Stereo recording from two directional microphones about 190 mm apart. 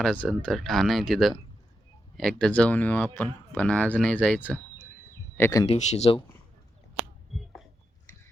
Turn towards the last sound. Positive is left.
turn(degrees=0)  # may be behind; listen again after turning